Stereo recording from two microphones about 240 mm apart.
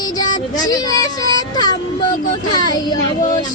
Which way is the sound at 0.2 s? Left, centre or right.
Centre.